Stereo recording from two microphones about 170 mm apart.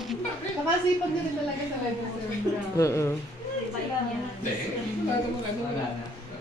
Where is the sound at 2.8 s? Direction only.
15° left (ahead or behind).